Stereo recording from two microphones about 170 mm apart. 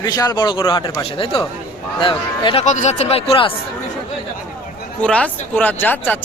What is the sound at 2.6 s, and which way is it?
Speech, 45° left (ahead or behind).